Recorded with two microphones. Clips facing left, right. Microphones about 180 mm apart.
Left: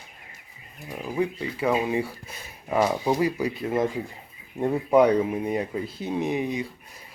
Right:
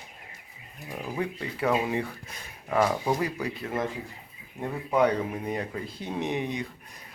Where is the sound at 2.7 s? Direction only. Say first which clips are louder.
Left 2 dB; 20° left (ahead or behind).